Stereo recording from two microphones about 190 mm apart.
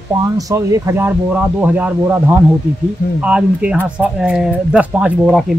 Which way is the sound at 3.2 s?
5° right (ahead or behind).